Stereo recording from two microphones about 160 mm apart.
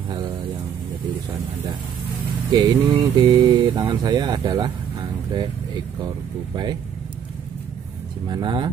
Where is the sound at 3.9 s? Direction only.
25° right (ahead or behind).